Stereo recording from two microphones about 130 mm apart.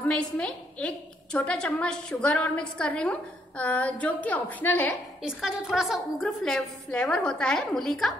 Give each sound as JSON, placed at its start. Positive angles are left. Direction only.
{"t": 0.0, "sound": "a woman's voice", "side_deg": 10}
{"t": 5.2, "sound": "a woman's voice", "side_deg": -5}